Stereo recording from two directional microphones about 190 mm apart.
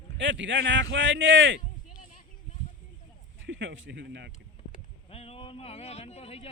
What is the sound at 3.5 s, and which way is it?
Speech, 80° right.